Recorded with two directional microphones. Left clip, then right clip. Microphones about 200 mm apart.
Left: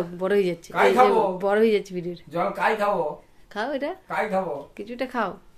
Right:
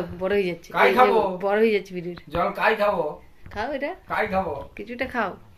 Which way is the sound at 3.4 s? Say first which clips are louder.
Even; 25° left (ahead or behind).